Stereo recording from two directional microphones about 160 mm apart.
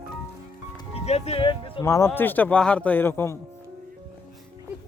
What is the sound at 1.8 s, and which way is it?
Speech, 20° left (ahead or behind).